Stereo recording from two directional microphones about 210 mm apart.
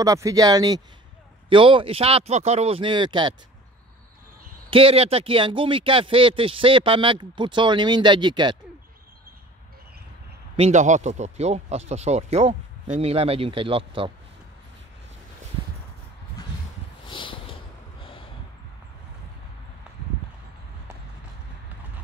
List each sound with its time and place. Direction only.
0.0 s speech: 15° right (ahead or behind)
4.6 s speech: 25° right (ahead or behind)
10.5 s speech: 30° right (ahead or behind)
17.1 s a sound: 25° left (ahead or behind)